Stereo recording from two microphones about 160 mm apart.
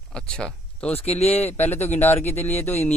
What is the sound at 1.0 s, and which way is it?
Speech, 40° left (ahead or behind).